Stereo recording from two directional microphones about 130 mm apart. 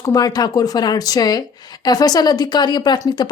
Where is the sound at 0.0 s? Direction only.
30° left (ahead or behind).